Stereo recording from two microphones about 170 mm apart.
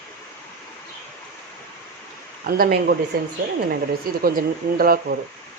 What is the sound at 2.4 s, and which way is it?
Speech, 60° right (ahead or behind).